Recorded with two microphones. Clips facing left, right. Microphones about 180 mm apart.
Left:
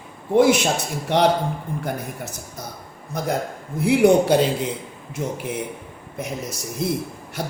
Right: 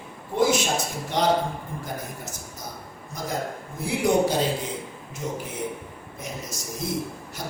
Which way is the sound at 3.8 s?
65° left (ahead or behind).